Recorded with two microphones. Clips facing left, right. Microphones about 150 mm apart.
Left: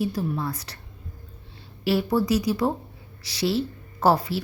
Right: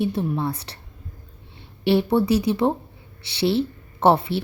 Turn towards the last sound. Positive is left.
turn(degrees=-25)  # may be behind; listen again after turning